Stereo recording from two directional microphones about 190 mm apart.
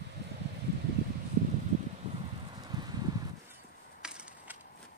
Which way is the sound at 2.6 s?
20° right (ahead or behind).